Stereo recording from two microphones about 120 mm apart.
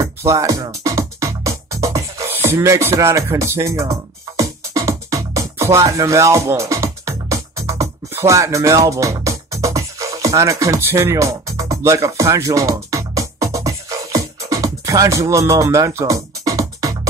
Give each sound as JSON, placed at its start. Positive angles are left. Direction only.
{"t": 0.0, "sound": "music", "side_deg": -25}